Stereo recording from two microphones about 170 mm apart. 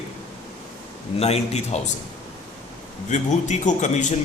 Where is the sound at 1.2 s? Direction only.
40° left (ahead or behind).